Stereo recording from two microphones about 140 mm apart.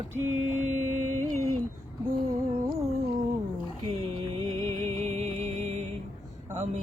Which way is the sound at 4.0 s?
45° right (ahead or behind).